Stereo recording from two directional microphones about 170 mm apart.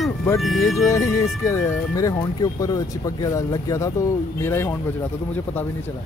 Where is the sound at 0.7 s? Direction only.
15° left (ahead or behind).